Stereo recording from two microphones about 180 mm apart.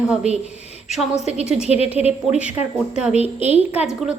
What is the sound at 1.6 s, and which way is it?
Speech, 35° left (ahead or behind).